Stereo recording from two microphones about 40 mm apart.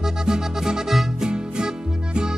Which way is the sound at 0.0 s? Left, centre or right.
Centre.